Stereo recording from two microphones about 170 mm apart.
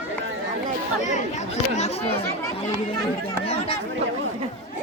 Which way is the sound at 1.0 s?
45° left (ahead or behind).